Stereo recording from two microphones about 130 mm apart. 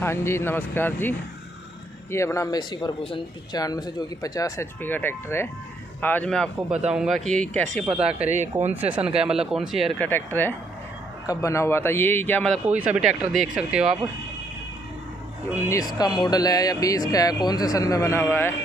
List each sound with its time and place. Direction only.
0.0 s a man's voice: 20° left (ahead or behind); by 3.2 s 40° left (ahead or behind)
3.5 s a man's voice: 30° left (ahead or behind); by 6.5 s 10° left (ahead or behind)
6.9 s speech: 5° right (ahead or behind)
7.9 s speech: 10° right (ahead or behind)
9.9 s a man's voice: 15° left (ahead or behind)
12.6 s speech: 10° right (ahead or behind)
15.7 s speech: 30° left (ahead or behind)